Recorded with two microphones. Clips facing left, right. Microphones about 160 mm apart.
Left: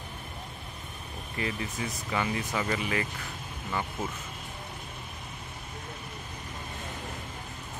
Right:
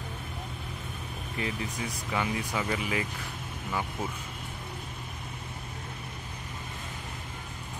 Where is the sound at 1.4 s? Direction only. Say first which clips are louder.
Left 1 dB; 5° right (ahead or behind).